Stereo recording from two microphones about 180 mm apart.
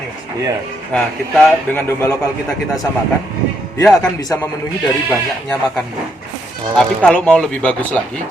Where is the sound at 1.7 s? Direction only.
15° left (ahead or behind).